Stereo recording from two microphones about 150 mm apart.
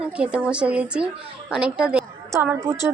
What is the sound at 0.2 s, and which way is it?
A woman's voice, 5° right (ahead or behind).